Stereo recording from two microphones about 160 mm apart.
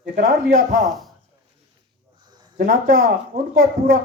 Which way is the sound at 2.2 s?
25° right (ahead or behind).